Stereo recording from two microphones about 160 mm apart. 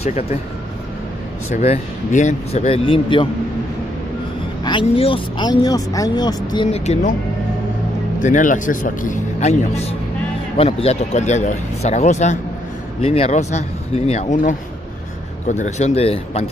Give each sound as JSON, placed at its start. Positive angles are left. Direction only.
{"t": 0.0, "sound": "speech", "side_deg": 40}
{"t": 1.5, "sound": "speech", "side_deg": 45}
{"t": 4.6, "sound": "speech", "side_deg": 35}
{"t": 6.9, "sound": "speech", "side_deg": 50}
{"t": 8.2, "sound": "speech", "side_deg": 55}